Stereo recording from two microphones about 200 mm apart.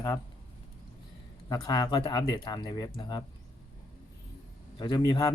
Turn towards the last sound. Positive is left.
turn(degrees=20)  # may be behind; listen again after turning